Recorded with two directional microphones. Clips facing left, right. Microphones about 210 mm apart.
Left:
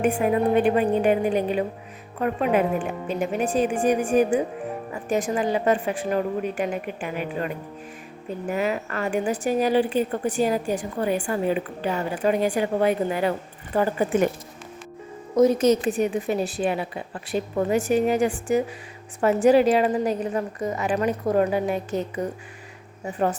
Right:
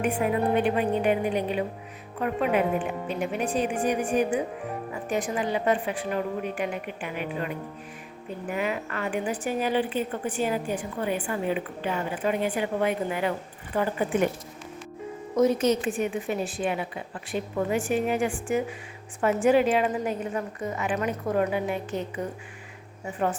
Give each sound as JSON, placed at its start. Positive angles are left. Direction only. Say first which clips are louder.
{"t": 0.0, "sound": "a woman's voice", "louder": "left 4 dB", "side_deg": 45}
{"t": 3.1, "sound": "a woman's voice", "louder": "left 5 dB", "side_deg": 45}
{"t": 8.4, "sound": "a woman's voice", "louder": "left 4 dB", "side_deg": 40}
{"t": 15.4, "sound": "a woman's voice", "louder": "left 4 dB", "side_deg": 40}